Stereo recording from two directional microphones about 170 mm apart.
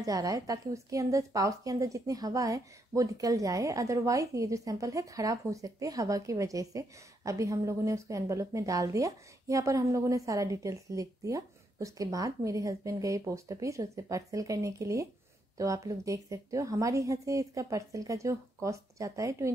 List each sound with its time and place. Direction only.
0.0 s a woman's voice: 20° right (ahead or behind)